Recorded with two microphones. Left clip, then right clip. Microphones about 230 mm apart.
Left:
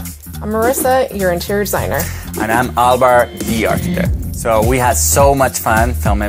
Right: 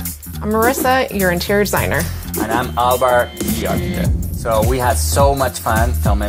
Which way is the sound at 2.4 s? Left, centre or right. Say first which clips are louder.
Left 4 dB; left.